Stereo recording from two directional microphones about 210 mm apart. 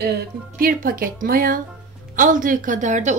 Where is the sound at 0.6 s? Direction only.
45° right (ahead or behind).